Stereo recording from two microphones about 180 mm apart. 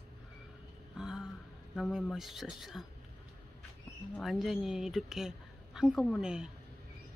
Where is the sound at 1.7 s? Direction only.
Centre (ahead or behind).